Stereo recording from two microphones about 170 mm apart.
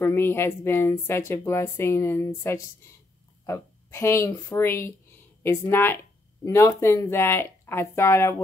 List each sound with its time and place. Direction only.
0.0 s a woman's voice: 15° left (ahead or behind)